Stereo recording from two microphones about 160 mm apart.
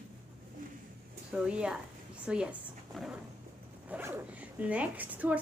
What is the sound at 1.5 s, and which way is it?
A woman's voice, 5° right (ahead or behind).